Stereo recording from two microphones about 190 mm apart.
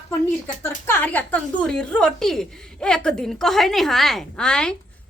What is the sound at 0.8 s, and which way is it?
A woman's voice, 10° left (ahead or behind).